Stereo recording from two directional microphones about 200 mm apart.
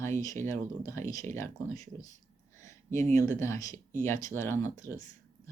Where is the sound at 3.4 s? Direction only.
15° left (ahead or behind).